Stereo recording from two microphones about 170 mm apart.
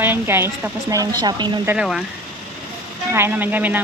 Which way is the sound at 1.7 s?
5° right (ahead or behind).